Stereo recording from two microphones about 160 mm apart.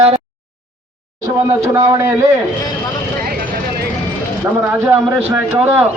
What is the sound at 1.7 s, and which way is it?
Speech, 20° right (ahead or behind).